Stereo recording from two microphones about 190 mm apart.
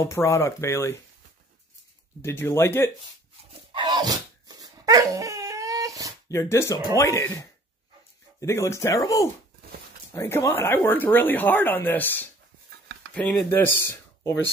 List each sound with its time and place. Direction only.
0.0 s speech: 15° left (ahead or behind)
2.2 s speech: 15° left (ahead or behind)
3.7 s dog: 20° right (ahead or behind)
6.2 s speech: 15° left (ahead or behind)